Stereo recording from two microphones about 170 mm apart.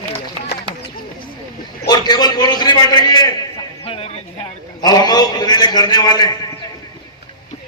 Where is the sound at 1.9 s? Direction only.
25° left (ahead or behind).